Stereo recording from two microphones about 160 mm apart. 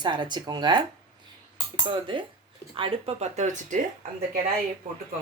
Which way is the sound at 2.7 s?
35° right (ahead or behind).